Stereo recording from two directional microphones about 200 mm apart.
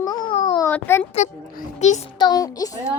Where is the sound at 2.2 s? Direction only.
20° left (ahead or behind).